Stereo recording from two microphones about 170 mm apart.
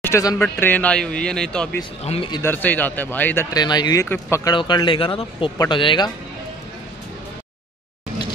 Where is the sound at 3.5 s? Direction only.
25° left (ahead or behind).